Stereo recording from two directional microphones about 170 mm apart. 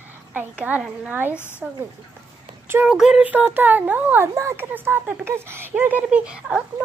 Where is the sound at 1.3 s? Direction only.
15° left (ahead or behind).